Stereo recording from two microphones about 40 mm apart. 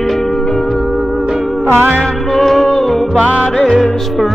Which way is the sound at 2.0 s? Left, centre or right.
Centre.